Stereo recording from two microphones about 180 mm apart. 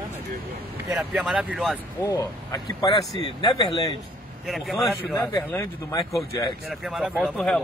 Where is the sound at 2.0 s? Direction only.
15° left (ahead or behind).